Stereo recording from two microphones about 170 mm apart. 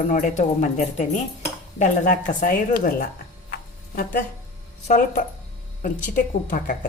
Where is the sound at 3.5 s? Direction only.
60° left (ahead or behind).